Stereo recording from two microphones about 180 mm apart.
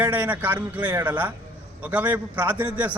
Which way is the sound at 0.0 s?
10° right (ahead or behind).